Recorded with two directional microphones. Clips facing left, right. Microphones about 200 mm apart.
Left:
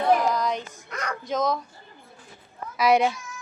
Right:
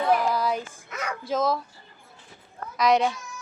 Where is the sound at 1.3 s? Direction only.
5° right (ahead or behind).